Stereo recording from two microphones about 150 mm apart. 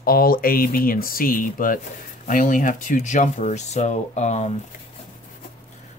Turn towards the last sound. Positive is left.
turn(degrees=50)  # may be behind; listen again after turning